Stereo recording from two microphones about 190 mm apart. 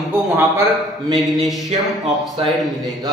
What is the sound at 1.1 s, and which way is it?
A man's voice, centre (ahead or behind).